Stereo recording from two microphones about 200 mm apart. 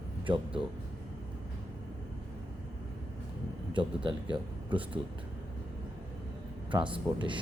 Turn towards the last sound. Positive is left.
turn(degrees=-25)  # may be behind; listen again after turning